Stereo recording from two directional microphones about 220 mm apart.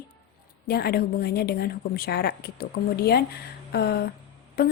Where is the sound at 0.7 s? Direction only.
45° left (ahead or behind).